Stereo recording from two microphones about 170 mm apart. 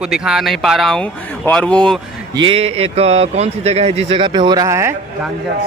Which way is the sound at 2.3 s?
30° right (ahead or behind).